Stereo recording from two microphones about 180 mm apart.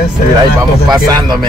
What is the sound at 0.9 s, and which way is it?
Speech, 20° right (ahead or behind).